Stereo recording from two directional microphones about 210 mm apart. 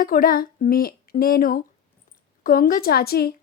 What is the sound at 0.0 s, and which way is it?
A woman's voice, 45° left (ahead or behind).